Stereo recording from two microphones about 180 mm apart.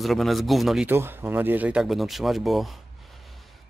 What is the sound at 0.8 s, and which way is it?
Speech, 10° right (ahead or behind).